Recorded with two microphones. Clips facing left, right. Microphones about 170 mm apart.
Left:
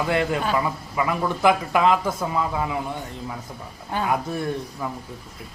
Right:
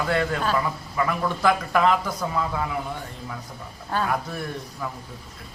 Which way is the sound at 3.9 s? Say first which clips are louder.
Left 2 dB; 20° left (ahead or behind).